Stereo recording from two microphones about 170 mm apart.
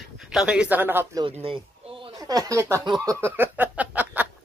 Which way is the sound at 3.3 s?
10° right (ahead or behind).